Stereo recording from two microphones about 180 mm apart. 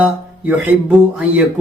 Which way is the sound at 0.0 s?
5° right (ahead or behind).